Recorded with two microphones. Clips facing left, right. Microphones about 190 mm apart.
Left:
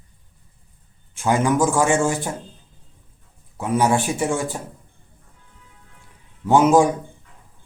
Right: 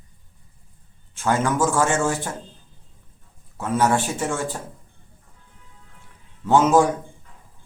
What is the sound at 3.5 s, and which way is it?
A man's voice, 15° left (ahead or behind).